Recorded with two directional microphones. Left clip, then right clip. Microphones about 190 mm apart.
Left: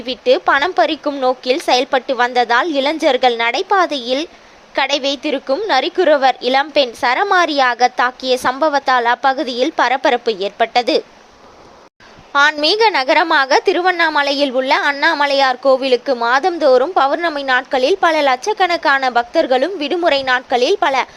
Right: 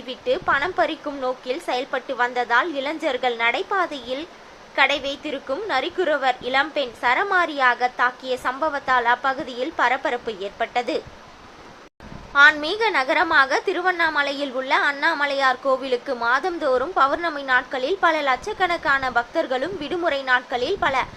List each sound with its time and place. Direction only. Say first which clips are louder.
0.0 s a woman's voice: left 9 dB; 45° left (ahead or behind)
12.3 s a woman's voice: left 3 dB; 45° left (ahead or behind)